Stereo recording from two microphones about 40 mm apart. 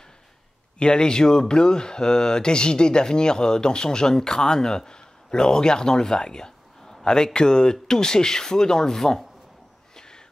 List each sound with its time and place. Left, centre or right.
0.7 s speech: left
9.9 s crow: centre